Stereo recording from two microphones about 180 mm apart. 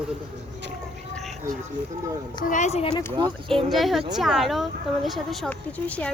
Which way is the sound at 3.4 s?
Centre (ahead or behind).